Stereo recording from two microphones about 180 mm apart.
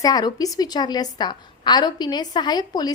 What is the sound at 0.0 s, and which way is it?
A woman's voice, 20° left (ahead or behind).